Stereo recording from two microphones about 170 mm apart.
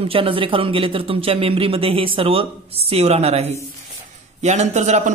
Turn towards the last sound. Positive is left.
turn(degrees=-45)  # may be behind; listen again after turning